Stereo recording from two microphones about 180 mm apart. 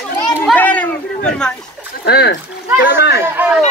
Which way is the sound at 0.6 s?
10° left (ahead or behind).